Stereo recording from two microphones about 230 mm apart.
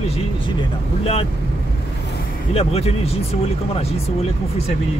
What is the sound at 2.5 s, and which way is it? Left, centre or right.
Speech, left.